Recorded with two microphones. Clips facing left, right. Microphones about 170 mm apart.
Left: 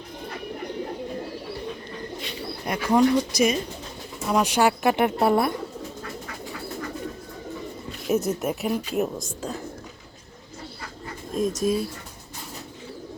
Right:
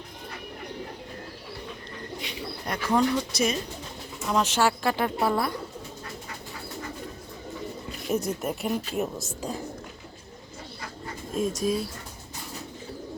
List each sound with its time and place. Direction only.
2.6 s speech: 10° left (ahead or behind)
8.0 s speech: centre (ahead or behind)
11.6 s speech: centre (ahead or behind)